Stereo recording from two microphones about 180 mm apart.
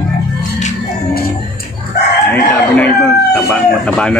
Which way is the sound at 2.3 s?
10° left (ahead or behind).